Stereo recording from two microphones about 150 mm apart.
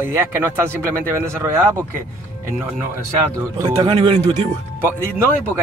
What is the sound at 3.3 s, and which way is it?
Speech, 25° right (ahead or behind).